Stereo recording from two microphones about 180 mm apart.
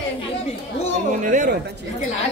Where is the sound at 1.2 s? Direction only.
45° right (ahead or behind).